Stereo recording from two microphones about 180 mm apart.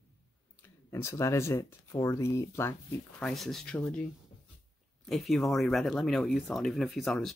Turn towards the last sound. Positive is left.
turn(degrees=0)  # may be behind; listen again after turning